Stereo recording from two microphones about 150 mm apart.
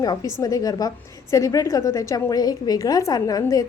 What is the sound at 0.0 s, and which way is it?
A woman's voice, 25° left (ahead or behind).